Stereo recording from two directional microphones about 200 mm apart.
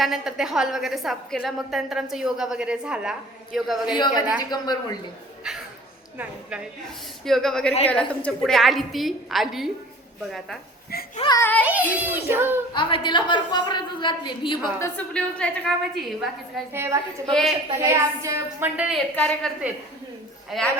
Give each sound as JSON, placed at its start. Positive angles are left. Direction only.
{"t": 0.0, "sound": "a woman's voice", "side_deg": 0}
{"t": 3.9, "sound": "a woman's voice", "side_deg": 20}
{"t": 6.1, "sound": "a woman's voice", "side_deg": -5}
{"t": 11.2, "sound": "a child's voice", "side_deg": 15}
{"t": 11.6, "sound": "a woman's voice", "side_deg": -10}
{"t": 12.7, "sound": "a woman's voice", "side_deg": 25}
{"t": 14.8, "sound": "a woman's voice", "side_deg": 5}
{"t": 16.7, "sound": "a woman's voice", "side_deg": -15}
{"t": 19.1, "sound": "a woman's voice", "side_deg": 5}
{"t": 20.5, "sound": "a woman's voice", "side_deg": 0}